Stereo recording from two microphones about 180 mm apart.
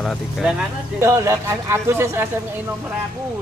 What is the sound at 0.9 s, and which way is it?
Speech, 15° right (ahead or behind).